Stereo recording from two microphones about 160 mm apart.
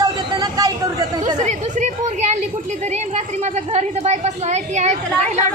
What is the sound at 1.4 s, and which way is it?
Speech, 45° right (ahead or behind).